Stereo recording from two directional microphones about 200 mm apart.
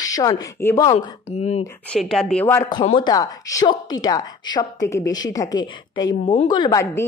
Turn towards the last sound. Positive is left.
turn(degrees=15)  # may be behind; listen again after turning